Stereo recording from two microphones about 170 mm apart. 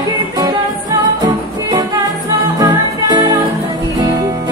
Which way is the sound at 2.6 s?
20° right (ahead or behind).